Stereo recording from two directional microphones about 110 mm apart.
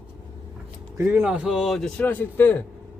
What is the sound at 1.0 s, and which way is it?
Speech, 20° right (ahead or behind).